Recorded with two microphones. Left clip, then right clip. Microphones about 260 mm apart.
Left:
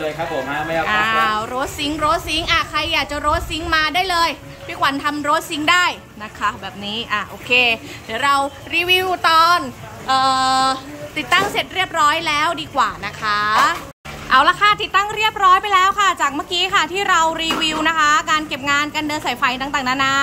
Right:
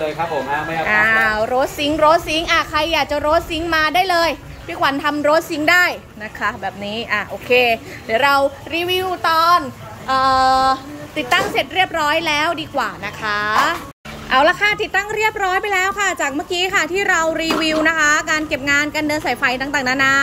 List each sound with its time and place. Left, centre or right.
0.8 s a woman's voice: left
1.1 s a woman's voice: centre
6.4 s a woman's voice: left
8.1 s a woman's voice: centre